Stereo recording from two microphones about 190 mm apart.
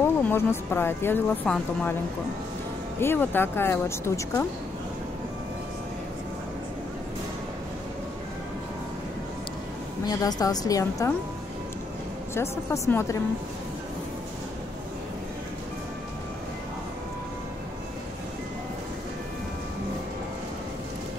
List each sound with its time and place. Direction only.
0.0 s speech: 10° left (ahead or behind)
3.0 s speech: 10° left (ahead or behind)
10.0 s a woman's voice: 20° left (ahead or behind)
12.4 s speech: 15° left (ahead or behind)